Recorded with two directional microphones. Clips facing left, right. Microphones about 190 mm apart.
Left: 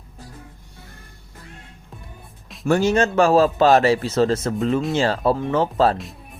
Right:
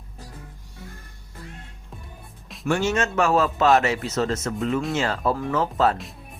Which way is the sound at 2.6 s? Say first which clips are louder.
Left 5 dB; 40° left (ahead or behind).